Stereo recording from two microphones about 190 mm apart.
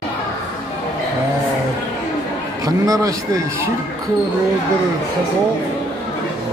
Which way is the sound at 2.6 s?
20° right (ahead or behind).